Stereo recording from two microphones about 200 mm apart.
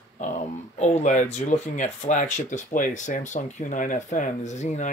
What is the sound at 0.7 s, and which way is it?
Speech, 35° left (ahead or behind).